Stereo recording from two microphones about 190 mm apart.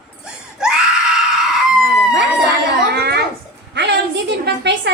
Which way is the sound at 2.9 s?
60° right (ahead or behind).